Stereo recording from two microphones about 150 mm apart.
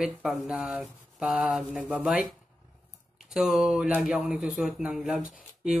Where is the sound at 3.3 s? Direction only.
Centre (ahead or behind).